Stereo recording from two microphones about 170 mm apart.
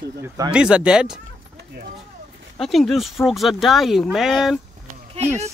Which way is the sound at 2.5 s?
Centre (ahead or behind).